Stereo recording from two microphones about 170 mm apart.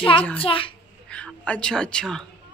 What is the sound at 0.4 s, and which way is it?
Speech, 30° left (ahead or behind).